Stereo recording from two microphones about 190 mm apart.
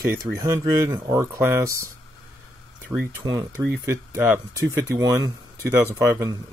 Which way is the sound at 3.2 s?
20° right (ahead or behind).